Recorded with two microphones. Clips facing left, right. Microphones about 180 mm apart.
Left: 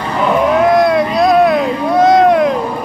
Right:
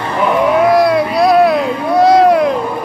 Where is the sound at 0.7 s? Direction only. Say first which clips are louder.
Even; centre (ahead or behind).